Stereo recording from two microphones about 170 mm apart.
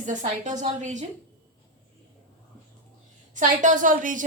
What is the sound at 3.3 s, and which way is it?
Speech, 50° right (ahead or behind).